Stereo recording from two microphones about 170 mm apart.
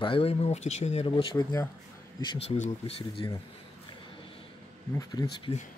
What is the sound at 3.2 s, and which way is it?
Speech, 25° left (ahead or behind).